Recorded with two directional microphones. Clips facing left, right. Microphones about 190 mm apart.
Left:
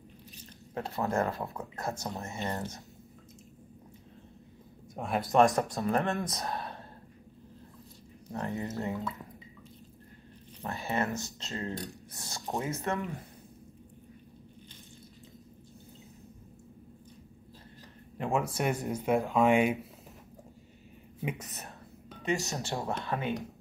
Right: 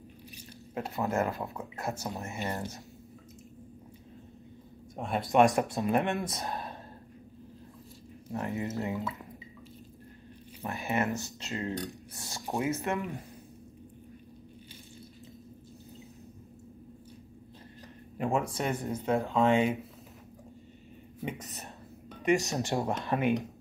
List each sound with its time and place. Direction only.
0.7 s speech: 5° right (ahead or behind)
4.9 s speech: centre (ahead or behind)
5.8 s speech: 15° right (ahead or behind)
6.2 s speech: centre (ahead or behind)
8.3 s speech: 5° right (ahead or behind)
10.6 s speech: 15° right (ahead or behind)
18.1 s a sound: centre (ahead or behind)
18.6 s speech: 15° left (ahead or behind)
21.2 s speech: centre (ahead or behind)
22.2 s speech: 15° right (ahead or behind)